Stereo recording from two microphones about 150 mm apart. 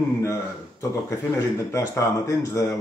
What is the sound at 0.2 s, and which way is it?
Speech, 20° left (ahead or behind).